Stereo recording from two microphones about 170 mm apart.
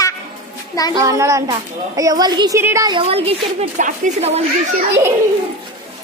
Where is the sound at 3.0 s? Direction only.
35° right (ahead or behind).